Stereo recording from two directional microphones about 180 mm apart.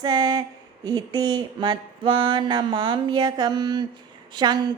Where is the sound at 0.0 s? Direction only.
25° right (ahead or behind).